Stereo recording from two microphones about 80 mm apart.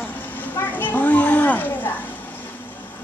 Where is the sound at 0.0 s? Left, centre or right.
Left.